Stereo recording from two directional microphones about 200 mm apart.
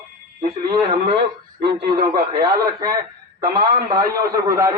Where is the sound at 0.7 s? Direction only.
25° right (ahead or behind).